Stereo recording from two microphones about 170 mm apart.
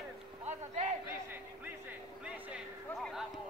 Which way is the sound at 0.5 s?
40° right (ahead or behind).